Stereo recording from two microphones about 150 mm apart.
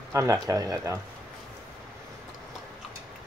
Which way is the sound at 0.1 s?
20° right (ahead or behind).